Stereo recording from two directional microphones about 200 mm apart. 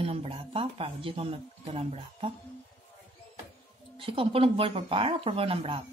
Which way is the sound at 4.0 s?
25° right (ahead or behind).